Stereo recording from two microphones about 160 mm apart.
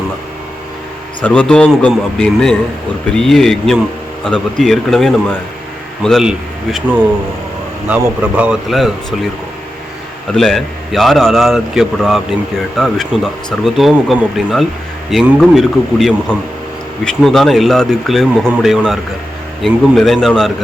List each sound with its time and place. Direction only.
1.2 s a man's voice: 5° left (ahead or behind)
10.3 s speech: centre (ahead or behind)
17.2 s speech: centre (ahead or behind)